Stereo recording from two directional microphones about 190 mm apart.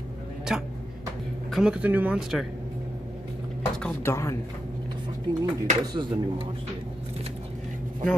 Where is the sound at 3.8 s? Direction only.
15° left (ahead or behind).